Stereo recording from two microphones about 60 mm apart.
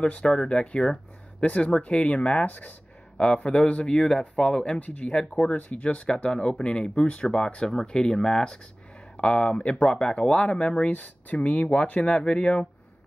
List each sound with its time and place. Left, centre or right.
0.0 s speech: centre
4.7 s speech: left; by 8.5 s centre
9.1 s speech: centre
10.9 s speech: left